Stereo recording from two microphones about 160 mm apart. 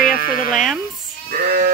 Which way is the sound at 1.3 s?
70° right (ahead or behind).